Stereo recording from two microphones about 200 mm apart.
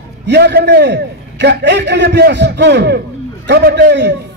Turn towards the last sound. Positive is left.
turn(degrees=-60)  # may be behind; listen again after turning